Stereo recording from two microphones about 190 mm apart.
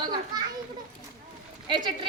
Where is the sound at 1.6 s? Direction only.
25° right (ahead or behind).